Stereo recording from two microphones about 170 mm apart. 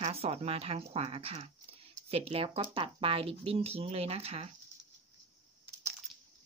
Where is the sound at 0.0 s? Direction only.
35° right (ahead or behind).